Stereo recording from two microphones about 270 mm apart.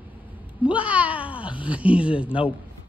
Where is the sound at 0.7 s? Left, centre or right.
Centre.